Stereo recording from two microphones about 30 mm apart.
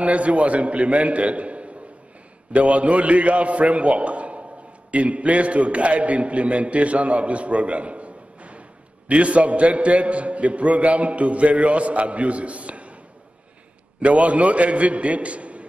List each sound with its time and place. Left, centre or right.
0.0 s a man's voice: right
14.0 s a man's voice: right